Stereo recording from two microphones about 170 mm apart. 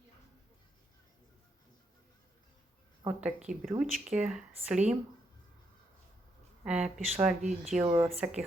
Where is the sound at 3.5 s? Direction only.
45° right (ahead or behind).